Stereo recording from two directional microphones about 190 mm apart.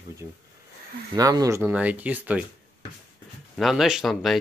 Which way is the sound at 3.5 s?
Centre (ahead or behind).